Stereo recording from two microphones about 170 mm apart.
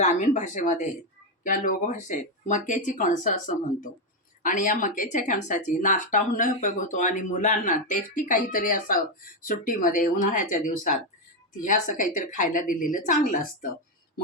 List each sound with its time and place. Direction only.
0.0 s speech: 45° left (ahead or behind)